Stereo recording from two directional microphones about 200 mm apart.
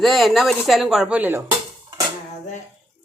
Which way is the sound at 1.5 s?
20° right (ahead or behind).